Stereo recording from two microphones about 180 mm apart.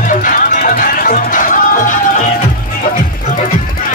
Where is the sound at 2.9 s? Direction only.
45° left (ahead or behind).